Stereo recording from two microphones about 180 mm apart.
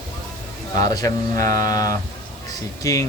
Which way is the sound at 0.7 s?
20° left (ahead or behind).